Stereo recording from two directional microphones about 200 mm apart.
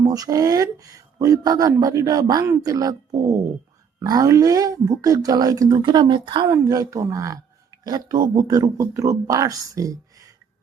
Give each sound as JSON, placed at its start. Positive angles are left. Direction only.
{"t": 0.0, "sound": "speech", "side_deg": -15}
{"t": 4.0, "sound": "speech", "side_deg": -20}